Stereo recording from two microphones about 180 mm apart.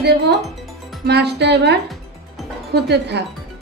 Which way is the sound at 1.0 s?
65° right (ahead or behind).